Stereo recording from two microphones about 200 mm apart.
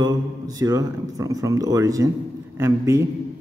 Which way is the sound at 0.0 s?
20° right (ahead or behind).